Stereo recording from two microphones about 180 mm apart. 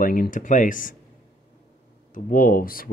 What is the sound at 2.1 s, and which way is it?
Speech, 50° left (ahead or behind).